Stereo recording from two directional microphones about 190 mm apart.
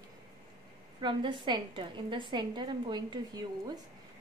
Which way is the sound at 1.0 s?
25° right (ahead or behind).